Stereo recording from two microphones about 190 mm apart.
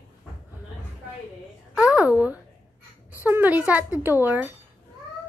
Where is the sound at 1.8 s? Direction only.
5° right (ahead or behind).